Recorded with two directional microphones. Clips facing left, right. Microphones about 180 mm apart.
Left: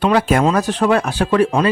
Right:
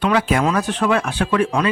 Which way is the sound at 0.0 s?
35° left (ahead or behind).